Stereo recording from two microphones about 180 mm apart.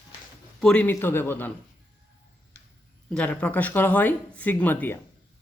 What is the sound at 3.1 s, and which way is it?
Speech, 5° left (ahead or behind).